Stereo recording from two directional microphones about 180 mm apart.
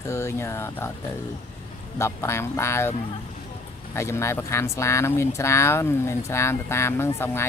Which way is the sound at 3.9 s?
15° left (ahead or behind).